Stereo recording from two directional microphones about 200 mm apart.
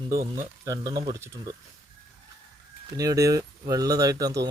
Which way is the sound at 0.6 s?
15° right (ahead or behind).